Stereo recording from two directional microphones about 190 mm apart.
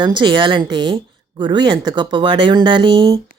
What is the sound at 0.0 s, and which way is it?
Speech, 25° right (ahead or behind).